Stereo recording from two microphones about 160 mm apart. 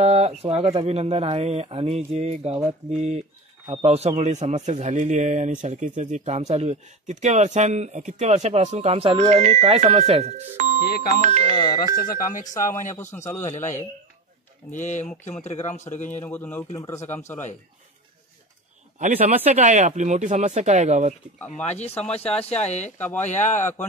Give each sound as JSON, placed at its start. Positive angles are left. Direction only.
{"t": 0.0, "sound": "speech", "side_deg": -40}
{"t": 10.8, "sound": "speech", "side_deg": 80}
{"t": 11.5, "sound": "speech", "side_deg": 25}
{"t": 11.8, "sound": "speech", "side_deg": 60}
{"t": 12.9, "sound": "speech", "side_deg": 15}
{"t": 13.4, "sound": "speech", "side_deg": 50}
{"t": 16.2, "sound": "speech", "side_deg": 10}
{"t": 18.9, "sound": "speech", "side_deg": -45}
{"t": 21.4, "sound": "speech", "side_deg": 10}
{"t": 21.7, "sound": "speech", "side_deg": 40}
{"t": 22.2, "sound": "speech", "side_deg": 10}
{"t": 22.5, "sound": "speech", "side_deg": 45}
{"t": 23.0, "sound": "speech", "side_deg": 10}
{"t": 23.3, "sound": "speech", "side_deg": 50}